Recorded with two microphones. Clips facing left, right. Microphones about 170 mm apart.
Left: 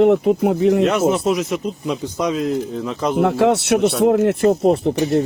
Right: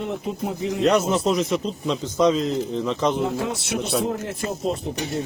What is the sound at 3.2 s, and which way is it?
Speech, 70° left (ahead or behind).